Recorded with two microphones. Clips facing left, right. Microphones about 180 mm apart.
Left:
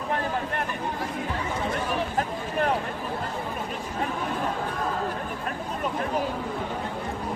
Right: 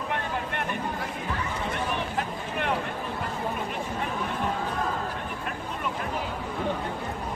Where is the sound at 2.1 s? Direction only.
40° left (ahead or behind).